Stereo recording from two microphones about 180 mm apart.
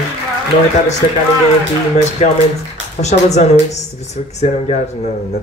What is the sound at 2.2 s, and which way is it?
Speech, 40° left (ahead or behind).